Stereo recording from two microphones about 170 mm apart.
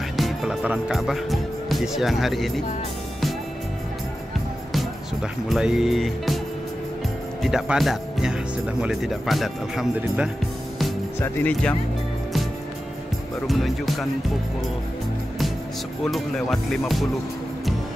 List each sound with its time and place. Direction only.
0.2 s speech: centre (ahead or behind)
4.7 s speech: centre (ahead or behind)
7.4 s speech: centre (ahead or behind)
11.1 s speech: 10° left (ahead or behind)
13.5 s speech: centre (ahead or behind)
16.0 s speech: centre (ahead or behind)